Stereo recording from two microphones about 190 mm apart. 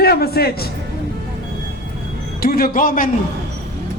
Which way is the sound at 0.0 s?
55° left (ahead or behind).